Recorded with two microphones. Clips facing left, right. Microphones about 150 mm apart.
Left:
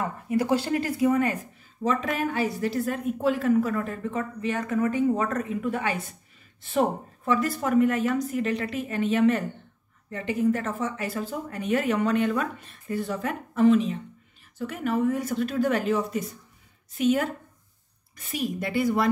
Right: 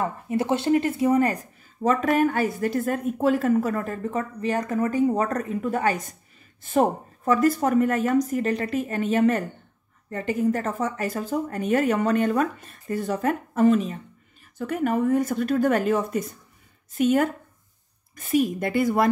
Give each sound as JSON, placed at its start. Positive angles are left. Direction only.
{"t": 0.0, "sound": "speech", "side_deg": -25}